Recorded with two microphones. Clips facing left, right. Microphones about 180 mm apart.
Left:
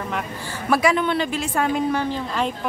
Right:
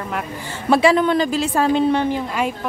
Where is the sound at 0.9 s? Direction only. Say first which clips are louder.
Right 5 dB; 40° right (ahead or behind); by 2.5 s 10° right (ahead or behind).